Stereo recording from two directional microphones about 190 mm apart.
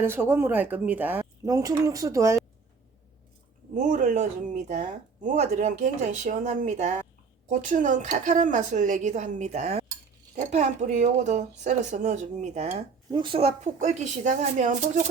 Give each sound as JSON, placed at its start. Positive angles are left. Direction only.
{"t": 0.0, "sound": "speech", "side_deg": -10}
{"t": 3.8, "sound": "speech", "side_deg": -40}
{"t": 13.1, "sound": "speech", "side_deg": -25}
{"t": 13.7, "sound": "speech", "side_deg": -40}